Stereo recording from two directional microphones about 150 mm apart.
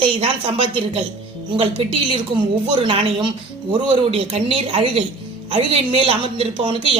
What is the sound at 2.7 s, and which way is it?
A woman's voice, 35° right (ahead or behind).